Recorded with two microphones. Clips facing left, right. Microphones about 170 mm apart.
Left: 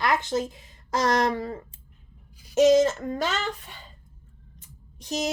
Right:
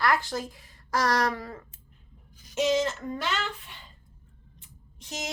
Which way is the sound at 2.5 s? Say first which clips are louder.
Left 8 dB; 40° left (ahead or behind).